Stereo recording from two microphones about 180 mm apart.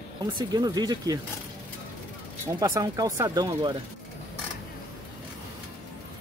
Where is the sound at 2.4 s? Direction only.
20° right (ahead or behind).